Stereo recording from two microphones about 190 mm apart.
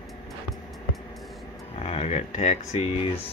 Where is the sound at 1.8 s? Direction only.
30° left (ahead or behind).